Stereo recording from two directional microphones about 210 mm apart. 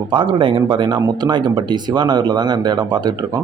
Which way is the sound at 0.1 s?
25° right (ahead or behind).